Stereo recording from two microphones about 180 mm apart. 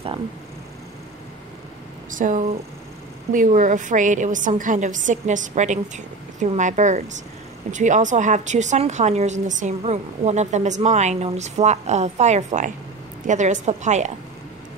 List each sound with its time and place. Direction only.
2.0 s a woman's voice: 45° right (ahead or behind)